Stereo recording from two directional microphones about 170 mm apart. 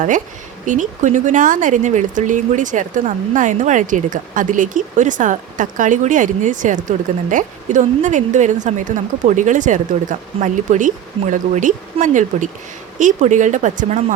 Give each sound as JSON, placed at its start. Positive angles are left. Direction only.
{"t": 0.6, "sound": "speech", "side_deg": -45}